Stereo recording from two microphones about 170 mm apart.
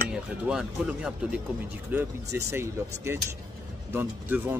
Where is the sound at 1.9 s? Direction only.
15° right (ahead or behind).